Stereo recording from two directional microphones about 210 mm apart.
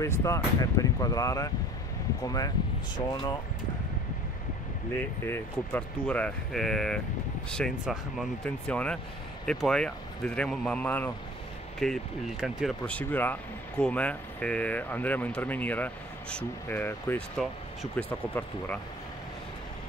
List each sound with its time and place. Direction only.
0.0 s speech: 15° left (ahead or behind)
4.9 s speech: 10° left (ahead or behind)